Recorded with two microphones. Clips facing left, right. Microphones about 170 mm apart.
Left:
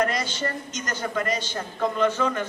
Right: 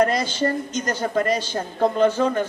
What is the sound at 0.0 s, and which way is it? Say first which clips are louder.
A woman's voice: right 6 dB; 30° right (ahead or behind).